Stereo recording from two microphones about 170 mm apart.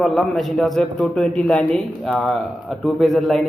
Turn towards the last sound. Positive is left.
turn(degrees=0)  # may be behind; listen again after turning